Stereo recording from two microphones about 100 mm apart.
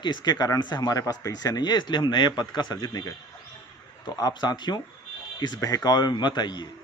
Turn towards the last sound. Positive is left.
turn(degrees=45)  # may be behind; listen again after turning